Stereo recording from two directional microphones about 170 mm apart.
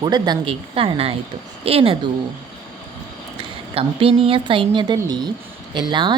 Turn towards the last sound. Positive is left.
turn(degrees=-25)  # may be behind; listen again after turning